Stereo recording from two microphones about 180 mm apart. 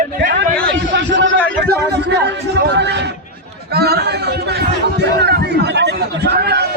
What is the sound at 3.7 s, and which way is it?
Speech, 60° right (ahead or behind).